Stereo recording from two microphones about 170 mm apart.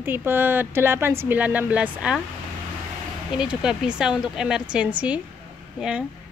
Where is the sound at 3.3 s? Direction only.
5° right (ahead or behind).